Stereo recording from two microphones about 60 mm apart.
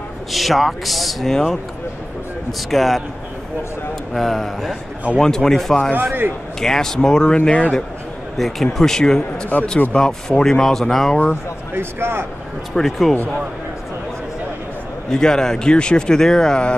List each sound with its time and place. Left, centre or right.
0.3 s speech: centre
2.7 s speech: centre
4.1 s a man's voice: centre
5.9 s speech: right
6.6 s a man's voice: centre
8.4 s a man's voice: centre
9.5 s a man's voice: left; by 11.1 s centre
11.7 s speech: right
12.7 s speech: centre
15.0 s a man's voice: centre